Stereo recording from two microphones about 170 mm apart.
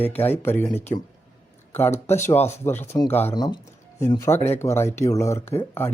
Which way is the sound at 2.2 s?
15° left (ahead or behind).